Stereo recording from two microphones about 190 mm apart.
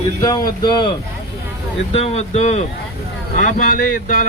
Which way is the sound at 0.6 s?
20° left (ahead or behind).